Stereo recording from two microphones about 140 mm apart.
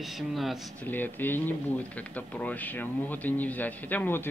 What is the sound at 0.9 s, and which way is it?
Speech, 15° left (ahead or behind).